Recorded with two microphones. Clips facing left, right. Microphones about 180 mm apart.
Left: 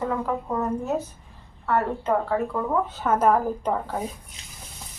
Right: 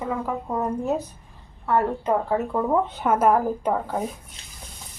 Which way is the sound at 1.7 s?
15° right (ahead or behind).